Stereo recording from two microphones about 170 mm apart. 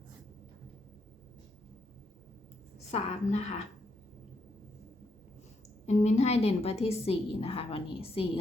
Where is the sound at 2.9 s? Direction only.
40° left (ahead or behind).